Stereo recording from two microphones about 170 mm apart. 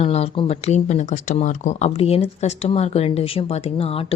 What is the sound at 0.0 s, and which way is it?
Speech, 35° left (ahead or behind).